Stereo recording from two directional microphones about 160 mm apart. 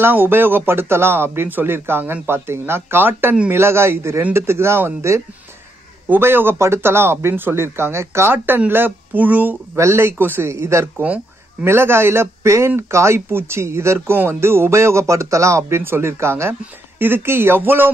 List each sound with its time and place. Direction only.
0.0 s speech: 15° right (ahead or behind)